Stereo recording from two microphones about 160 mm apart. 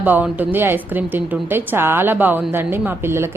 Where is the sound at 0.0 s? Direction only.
10° right (ahead or behind).